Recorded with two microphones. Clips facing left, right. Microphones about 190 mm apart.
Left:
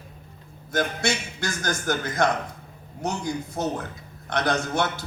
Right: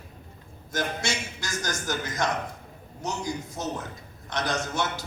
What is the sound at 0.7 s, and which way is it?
A man's voice, 60° left (ahead or behind).